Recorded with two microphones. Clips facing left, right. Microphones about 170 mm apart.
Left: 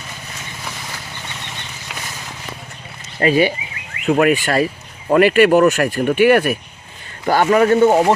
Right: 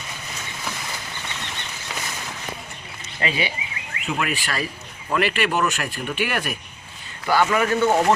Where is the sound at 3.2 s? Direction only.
45° left (ahead or behind).